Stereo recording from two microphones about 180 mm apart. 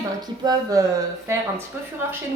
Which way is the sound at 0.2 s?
20° right (ahead or behind).